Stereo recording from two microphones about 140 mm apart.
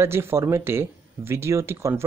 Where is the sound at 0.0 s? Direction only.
20° right (ahead or behind).